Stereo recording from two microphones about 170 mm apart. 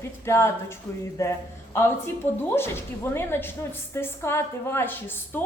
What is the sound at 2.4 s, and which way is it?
A woman's voice, 15° left (ahead or behind).